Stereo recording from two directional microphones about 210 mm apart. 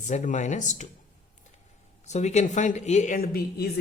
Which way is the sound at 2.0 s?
35° left (ahead or behind).